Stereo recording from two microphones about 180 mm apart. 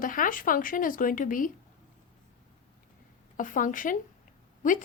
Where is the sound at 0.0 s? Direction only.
50° left (ahead or behind).